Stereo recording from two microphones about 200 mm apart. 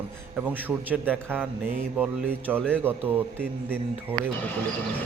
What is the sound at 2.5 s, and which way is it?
Speech, 5° right (ahead or behind).